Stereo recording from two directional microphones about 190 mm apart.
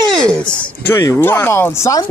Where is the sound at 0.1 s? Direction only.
5° left (ahead or behind).